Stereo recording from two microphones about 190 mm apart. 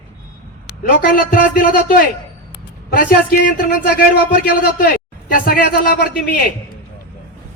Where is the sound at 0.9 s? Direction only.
50° left (ahead or behind).